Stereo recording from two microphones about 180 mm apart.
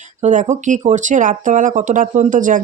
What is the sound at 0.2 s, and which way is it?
Speech, 40° right (ahead or behind).